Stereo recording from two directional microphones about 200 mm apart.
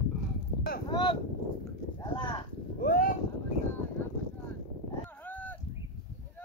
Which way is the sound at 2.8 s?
45° left (ahead or behind).